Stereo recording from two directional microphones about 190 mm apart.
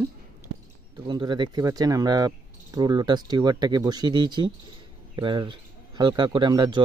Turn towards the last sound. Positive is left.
turn(degrees=-25)  # may be behind; listen again after turning